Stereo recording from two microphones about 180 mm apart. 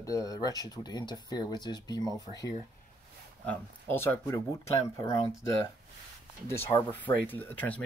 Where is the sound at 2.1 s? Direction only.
20° right (ahead or behind).